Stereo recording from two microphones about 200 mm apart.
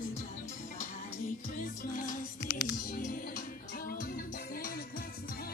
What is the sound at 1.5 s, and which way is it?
Music, 40° left (ahead or behind).